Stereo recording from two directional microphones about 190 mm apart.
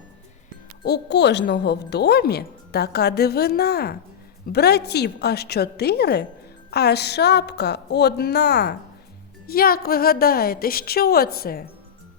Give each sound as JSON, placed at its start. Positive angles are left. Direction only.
{"t": 0.9, "sound": "a woman's voice", "side_deg": 60}